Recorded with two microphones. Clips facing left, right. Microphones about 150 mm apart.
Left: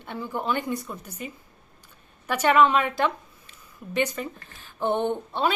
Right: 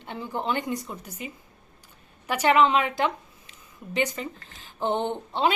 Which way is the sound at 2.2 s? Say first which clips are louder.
Left 1 dB; 15° right (ahead or behind).